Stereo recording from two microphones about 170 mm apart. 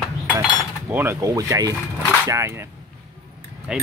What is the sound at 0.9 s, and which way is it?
Speech, 15° right (ahead or behind).